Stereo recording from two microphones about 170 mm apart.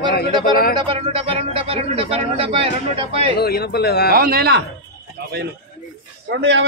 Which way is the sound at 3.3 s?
70° left (ahead or behind).